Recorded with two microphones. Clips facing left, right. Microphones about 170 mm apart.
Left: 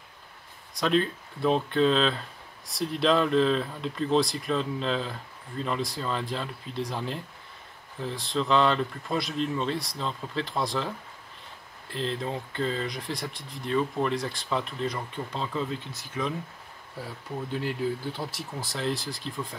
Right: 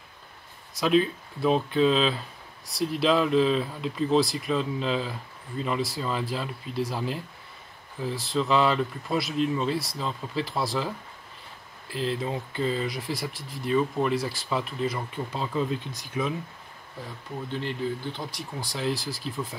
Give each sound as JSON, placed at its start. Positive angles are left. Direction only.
{"t": 0.7, "sound": "speech", "side_deg": -5}
{"t": 17.0, "sound": "speech", "side_deg": 5}